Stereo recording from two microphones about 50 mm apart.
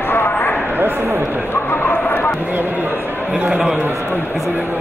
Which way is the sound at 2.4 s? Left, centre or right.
Right.